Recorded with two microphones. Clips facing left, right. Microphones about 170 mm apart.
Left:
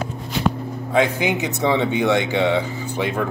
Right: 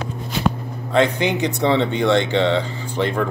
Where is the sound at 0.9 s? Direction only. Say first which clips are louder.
Right 1 dB; 10° left (ahead or behind).